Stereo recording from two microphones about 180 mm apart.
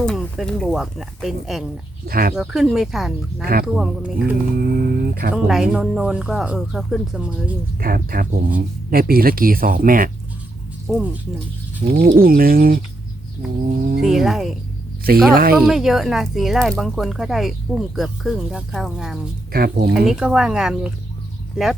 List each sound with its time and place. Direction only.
0.0 s speech: centre (ahead or behind)
2.0 s speech: 55° right (ahead or behind)
2.3 s speech: 5° right (ahead or behind)
3.4 s speech: 55° right (ahead or behind)
5.5 s speech: centre (ahead or behind)
7.8 s speech: 55° right (ahead or behind)
10.8 s speech: 5° right (ahead or behind)
11.8 s speech: 50° right (ahead or behind)
14.0 s speech: centre (ahead or behind)
15.3 s speech: 55° right (ahead or behind)
15.5 s speech: centre (ahead or behind)
19.5 s speech: 60° right (ahead or behind)
20.1 s speech: 5° right (ahead or behind)